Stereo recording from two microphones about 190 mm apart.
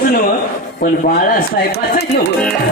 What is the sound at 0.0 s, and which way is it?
A man's voice, 50° left (ahead or behind).